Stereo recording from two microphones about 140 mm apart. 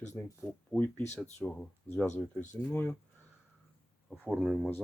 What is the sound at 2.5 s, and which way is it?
Speech, 15° left (ahead or behind).